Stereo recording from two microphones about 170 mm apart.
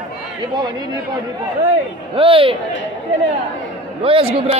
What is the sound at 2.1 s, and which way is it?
Speech, 30° right (ahead or behind).